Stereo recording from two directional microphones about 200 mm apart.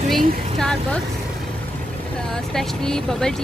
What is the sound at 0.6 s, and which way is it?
Speech, 5° left (ahead or behind).